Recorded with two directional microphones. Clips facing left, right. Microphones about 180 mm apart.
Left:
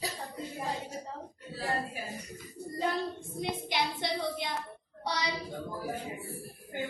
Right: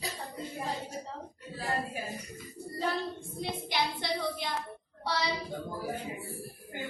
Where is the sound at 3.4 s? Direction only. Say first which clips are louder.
Even; 20° left (ahead or behind).